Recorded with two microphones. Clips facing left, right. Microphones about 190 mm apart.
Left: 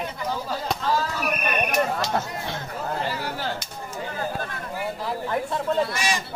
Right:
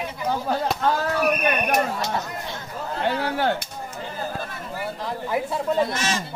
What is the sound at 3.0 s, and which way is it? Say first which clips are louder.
Speech: right 6 dB; 60° right (ahead or behind).